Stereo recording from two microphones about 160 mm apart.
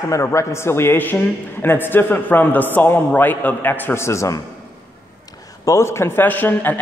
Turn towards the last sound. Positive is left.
turn(degrees=10)  # may be behind; listen again after turning